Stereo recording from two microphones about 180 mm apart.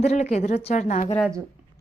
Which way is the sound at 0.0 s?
40° left (ahead or behind).